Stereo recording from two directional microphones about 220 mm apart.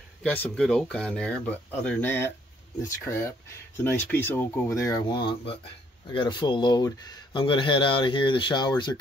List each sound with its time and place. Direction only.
0.2 s speech: 5° left (ahead or behind)